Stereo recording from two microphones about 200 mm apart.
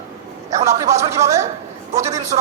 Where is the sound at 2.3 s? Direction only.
30° right (ahead or behind).